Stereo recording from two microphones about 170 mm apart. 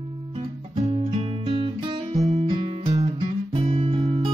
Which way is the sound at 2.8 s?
40° right (ahead or behind).